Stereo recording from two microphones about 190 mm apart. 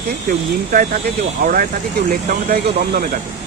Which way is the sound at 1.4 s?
45° right (ahead or behind).